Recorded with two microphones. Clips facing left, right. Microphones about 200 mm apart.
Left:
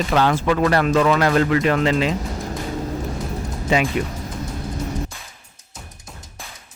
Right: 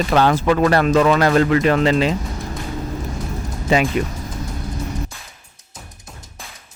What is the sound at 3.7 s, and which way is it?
Speech, 35° right (ahead or behind).